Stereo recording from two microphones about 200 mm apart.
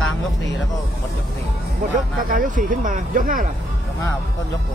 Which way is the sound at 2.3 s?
40° right (ahead or behind).